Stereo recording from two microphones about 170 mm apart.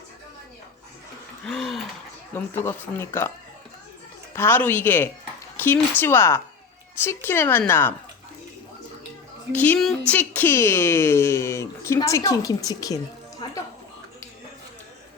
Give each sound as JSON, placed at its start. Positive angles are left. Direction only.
{"t": 1.5, "sound": "a sound", "side_deg": 0}
{"t": 2.3, "sound": "a woman's voice", "side_deg": 15}
{"t": 4.4, "sound": "a woman's voice", "side_deg": 10}
{"t": 9.5, "sound": "a woman's voice", "side_deg": 10}